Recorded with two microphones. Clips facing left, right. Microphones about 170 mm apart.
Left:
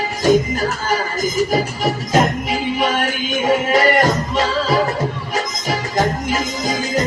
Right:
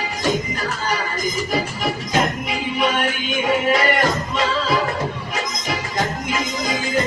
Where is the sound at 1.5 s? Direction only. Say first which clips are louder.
Left 4 dB; 40° left (ahead or behind).